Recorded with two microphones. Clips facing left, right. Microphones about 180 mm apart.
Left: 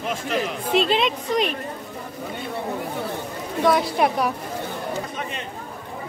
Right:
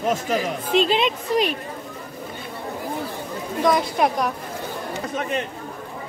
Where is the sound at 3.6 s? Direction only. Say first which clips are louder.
Even; 5° left (ahead or behind).